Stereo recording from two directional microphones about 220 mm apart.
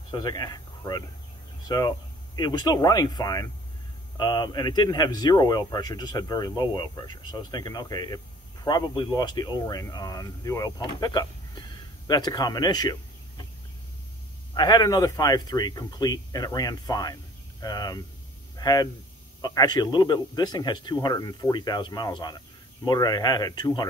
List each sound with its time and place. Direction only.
0.1 s speech: 20° left (ahead or behind)
14.5 s speech: 20° left (ahead or behind)